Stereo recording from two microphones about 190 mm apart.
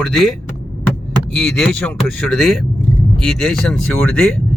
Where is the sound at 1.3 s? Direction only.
5° left (ahead or behind).